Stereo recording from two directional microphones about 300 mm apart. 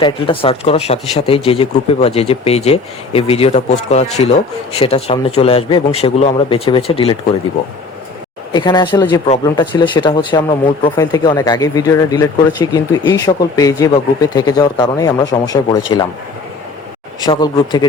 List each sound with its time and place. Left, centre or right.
0.0 s speech: centre
8.5 s speech: centre
17.2 s speech: centre